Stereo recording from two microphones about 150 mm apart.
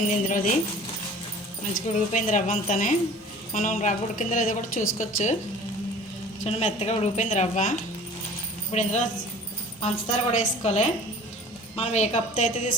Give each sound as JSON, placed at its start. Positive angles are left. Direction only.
{"t": 0.1, "sound": "a woman's voice", "side_deg": 60}
{"t": 1.7, "sound": "a woman's voice", "side_deg": 55}
{"t": 6.4, "sound": "a woman's voice", "side_deg": 50}